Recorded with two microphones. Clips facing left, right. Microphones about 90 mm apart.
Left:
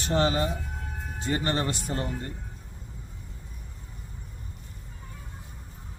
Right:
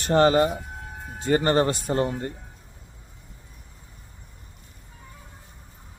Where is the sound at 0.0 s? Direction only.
50° right (ahead or behind).